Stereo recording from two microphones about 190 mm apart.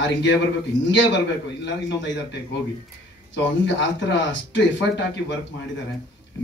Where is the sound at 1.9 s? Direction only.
70° left (ahead or behind).